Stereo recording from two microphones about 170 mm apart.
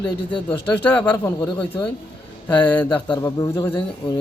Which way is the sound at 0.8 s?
10° left (ahead or behind).